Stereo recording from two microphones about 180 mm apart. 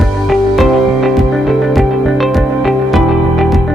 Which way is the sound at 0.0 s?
Centre (ahead or behind).